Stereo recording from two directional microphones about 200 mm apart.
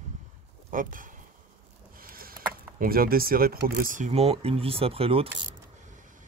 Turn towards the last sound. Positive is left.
turn(degrees=-30)  # may be behind; listen again after turning